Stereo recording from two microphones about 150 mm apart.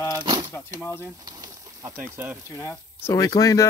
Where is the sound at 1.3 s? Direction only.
25° right (ahead or behind).